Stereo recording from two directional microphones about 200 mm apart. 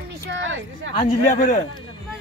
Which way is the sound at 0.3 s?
70° right (ahead or behind).